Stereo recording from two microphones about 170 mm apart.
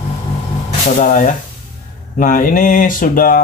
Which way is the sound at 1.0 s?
50° left (ahead or behind).